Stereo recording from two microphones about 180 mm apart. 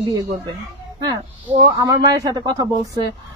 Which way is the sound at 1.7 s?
20° right (ahead or behind).